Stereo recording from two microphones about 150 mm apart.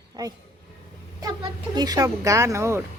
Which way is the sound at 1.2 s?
25° right (ahead or behind).